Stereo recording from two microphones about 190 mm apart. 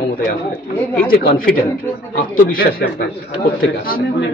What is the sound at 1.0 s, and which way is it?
A man's voice, 50° left (ahead or behind).